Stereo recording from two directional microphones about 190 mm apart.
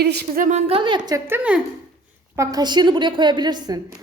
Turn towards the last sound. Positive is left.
turn(degrees=-20)  # may be behind; listen again after turning